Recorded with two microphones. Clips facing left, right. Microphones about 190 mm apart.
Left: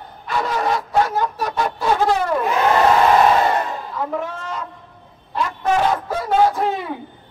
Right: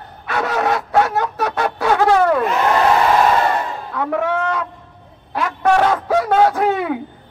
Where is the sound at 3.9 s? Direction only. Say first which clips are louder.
Right 9 dB; 70° right (ahead or behind).